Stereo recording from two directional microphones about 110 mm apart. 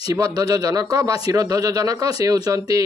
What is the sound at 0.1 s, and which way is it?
Speech, 35° right (ahead or behind).